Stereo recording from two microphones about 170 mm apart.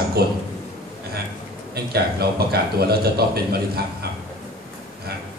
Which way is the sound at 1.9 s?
65° right (ahead or behind).